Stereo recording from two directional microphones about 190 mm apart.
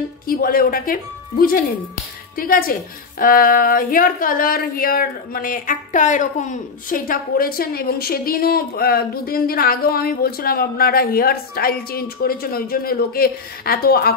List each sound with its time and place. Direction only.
0.3 s a woman's voice: 50° left (ahead or behind)
2.3 s a woman's voice: 50° left (ahead or behind)